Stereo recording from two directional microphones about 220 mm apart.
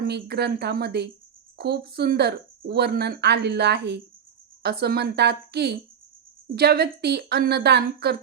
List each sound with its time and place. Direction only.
0.0 s speech: 50° right (ahead or behind)